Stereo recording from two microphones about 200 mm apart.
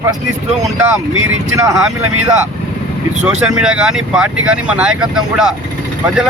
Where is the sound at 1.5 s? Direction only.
15° right (ahead or behind).